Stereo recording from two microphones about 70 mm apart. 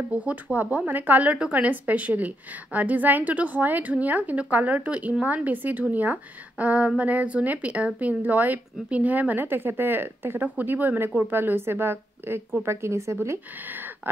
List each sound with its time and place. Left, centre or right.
0.1 s a woman's voice: right